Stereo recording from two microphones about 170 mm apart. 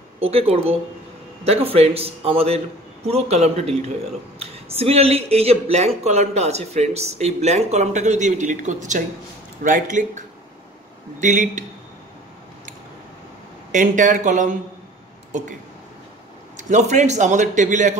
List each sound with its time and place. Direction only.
0.2 s a man's voice: 35° right (ahead or behind)
13.7 s a man's voice: 50° right (ahead or behind)
16.5 s a man's voice: 45° right (ahead or behind)